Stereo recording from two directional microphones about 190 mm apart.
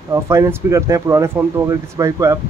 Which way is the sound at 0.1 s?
15° right (ahead or behind).